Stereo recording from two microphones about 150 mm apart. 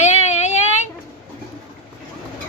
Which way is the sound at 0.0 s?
50° left (ahead or behind).